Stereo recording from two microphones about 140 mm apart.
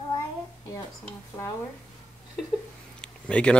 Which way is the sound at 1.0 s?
15° left (ahead or behind).